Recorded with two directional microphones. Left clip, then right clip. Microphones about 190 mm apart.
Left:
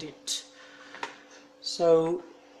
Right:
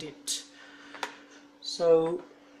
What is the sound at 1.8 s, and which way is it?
Speech, 15° left (ahead or behind).